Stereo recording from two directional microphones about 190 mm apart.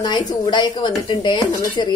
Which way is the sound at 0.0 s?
20° left (ahead or behind).